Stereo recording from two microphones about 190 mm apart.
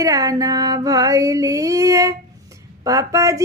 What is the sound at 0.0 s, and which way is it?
Female singing, 20° right (ahead or behind).